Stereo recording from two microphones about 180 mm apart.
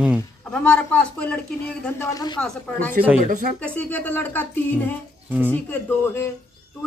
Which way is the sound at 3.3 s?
45° right (ahead or behind).